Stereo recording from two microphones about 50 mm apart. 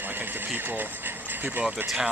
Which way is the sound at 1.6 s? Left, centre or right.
Centre.